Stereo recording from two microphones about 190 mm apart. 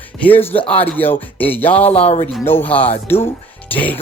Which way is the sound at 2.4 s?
10° left (ahead or behind).